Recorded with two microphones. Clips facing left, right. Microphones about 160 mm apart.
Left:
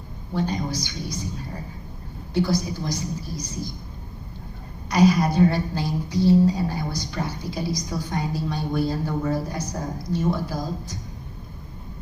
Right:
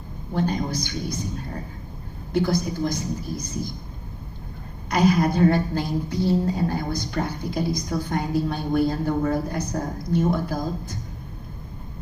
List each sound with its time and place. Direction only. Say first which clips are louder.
0.3 s a woman's voice: right 1 dB; 50° right (ahead or behind)
2.3 s a woman's voice: right 1 dB; 50° right (ahead or behind)
4.9 s a woman's voice: left 1 dB; 55° right (ahead or behind)